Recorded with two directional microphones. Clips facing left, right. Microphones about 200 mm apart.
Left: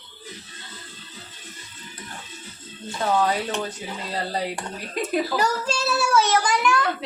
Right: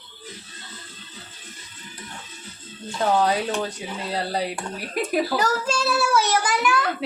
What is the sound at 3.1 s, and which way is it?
Speech, 15° right (ahead or behind).